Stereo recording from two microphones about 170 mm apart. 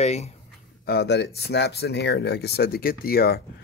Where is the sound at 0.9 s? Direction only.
80° left; by 3.4 s 65° left (ahead or behind).